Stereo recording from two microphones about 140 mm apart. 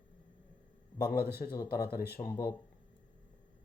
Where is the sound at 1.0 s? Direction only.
90° left.